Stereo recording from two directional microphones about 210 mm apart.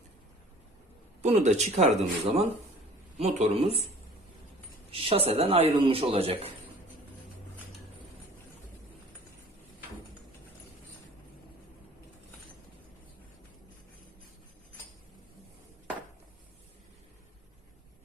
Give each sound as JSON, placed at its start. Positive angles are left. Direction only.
{"t": 1.2, "sound": "speech", "side_deg": -35}
{"t": 4.9, "sound": "speech", "side_deg": -25}